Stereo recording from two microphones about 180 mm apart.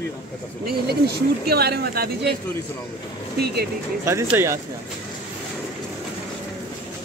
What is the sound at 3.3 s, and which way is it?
Speech, 65° right (ahead or behind).